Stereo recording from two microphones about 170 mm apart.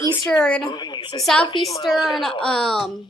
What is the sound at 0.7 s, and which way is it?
Speech, 25° left (ahead or behind).